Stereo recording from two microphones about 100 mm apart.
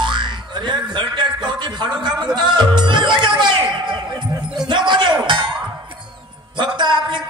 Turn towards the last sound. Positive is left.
turn(degrees=-50)  # may be behind; listen again after turning